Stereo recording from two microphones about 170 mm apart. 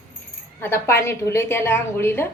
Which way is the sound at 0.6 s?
15° left (ahead or behind).